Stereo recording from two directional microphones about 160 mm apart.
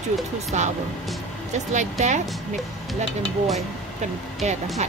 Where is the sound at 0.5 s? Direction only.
45° right (ahead or behind).